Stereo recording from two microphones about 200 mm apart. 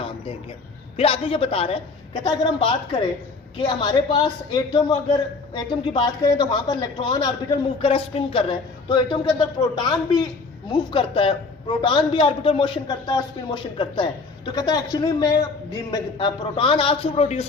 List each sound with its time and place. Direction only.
0.9 s a woman's voice: 30° left (ahead or behind)